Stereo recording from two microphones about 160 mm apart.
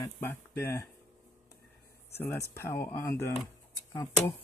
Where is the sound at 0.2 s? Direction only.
15° left (ahead or behind).